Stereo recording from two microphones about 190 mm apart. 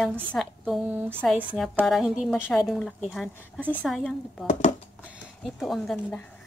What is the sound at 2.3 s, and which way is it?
Speech, 10° left (ahead or behind).